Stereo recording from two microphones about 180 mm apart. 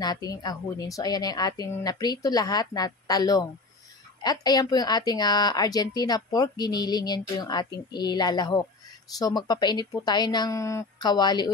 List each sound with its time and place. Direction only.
0.0 s a woman's voice: 20° left (ahead or behind)